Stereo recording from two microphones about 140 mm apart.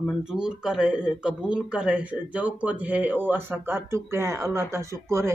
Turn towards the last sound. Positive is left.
turn(degrees=-20)  # may be behind; listen again after turning